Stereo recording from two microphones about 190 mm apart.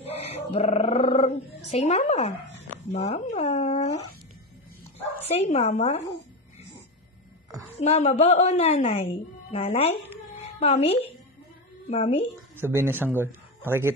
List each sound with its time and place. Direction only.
0.0 s roar: 35° left (ahead or behind)
2.9 s a woman's voice: 35° left (ahead or behind)
4.9 s speech: 30° left (ahead or behind)
7.7 s a woman's voice: 35° left (ahead or behind)
10.3 s cat: 30° left (ahead or behind)
11.9 s a woman's voice: 30° left (ahead or behind)
12.5 s speech: 10° right (ahead or behind)